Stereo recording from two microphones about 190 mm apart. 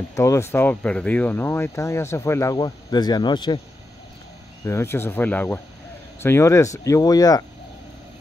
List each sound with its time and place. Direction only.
0.1 s speech: 15° left (ahead or behind)
4.6 s speech: 15° left (ahead or behind)